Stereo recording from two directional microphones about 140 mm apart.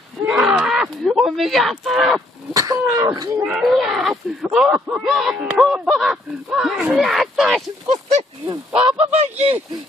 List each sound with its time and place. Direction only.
0.2 s a sound: 5° right (ahead or behind)
2.5 s speech: 25° right (ahead or behind)
3.4 s speech: 5° right (ahead or behind)
8.5 s speech: 35° right (ahead or behind)
9.1 s speech: 45° right (ahead or behind)